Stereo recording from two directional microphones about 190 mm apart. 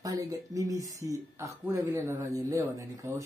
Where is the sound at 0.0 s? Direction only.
20° right (ahead or behind).